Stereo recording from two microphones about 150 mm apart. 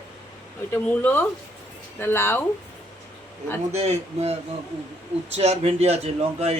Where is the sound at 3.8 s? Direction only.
45° right (ahead or behind).